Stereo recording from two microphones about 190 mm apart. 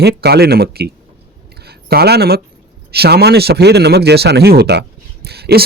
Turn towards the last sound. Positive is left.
turn(degrees=-55)  # may be behind; listen again after turning